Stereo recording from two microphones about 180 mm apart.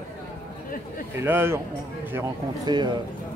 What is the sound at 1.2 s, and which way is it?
Speech, 15° right (ahead or behind).